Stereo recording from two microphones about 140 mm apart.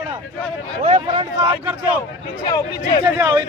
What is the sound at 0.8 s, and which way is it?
Speech, 45° right (ahead or behind).